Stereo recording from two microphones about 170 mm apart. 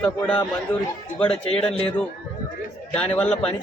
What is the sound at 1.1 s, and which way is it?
Speech, 35° left (ahead or behind).